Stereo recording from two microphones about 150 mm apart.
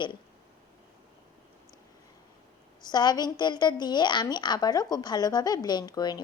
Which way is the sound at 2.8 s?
30° left (ahead or behind).